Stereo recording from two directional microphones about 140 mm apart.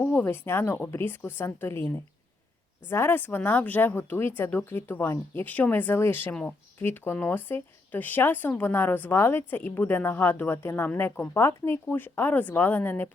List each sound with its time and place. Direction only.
0.0 s a woman's voice: 15° left (ahead or behind)
2.9 s a woman's voice: 15° left (ahead or behind)